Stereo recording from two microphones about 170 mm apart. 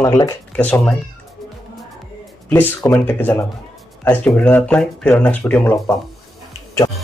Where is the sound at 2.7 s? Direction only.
15° left (ahead or behind).